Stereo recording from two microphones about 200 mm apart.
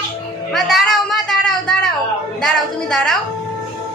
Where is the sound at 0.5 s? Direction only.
Centre (ahead or behind).